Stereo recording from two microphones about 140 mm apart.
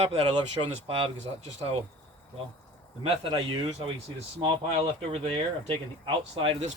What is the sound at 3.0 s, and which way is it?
Speech, 40° right (ahead or behind).